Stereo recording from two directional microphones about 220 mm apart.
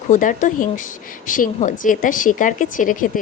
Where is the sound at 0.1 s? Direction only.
35° left (ahead or behind).